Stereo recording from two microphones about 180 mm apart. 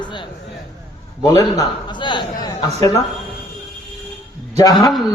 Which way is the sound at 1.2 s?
20° left (ahead or behind).